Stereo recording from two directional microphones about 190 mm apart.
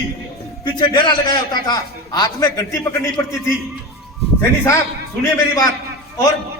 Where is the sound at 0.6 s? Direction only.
25° left (ahead or behind).